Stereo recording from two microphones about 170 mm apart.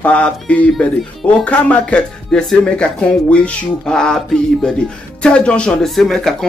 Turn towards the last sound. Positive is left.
turn(degrees=0)  # may be behind; listen again after turning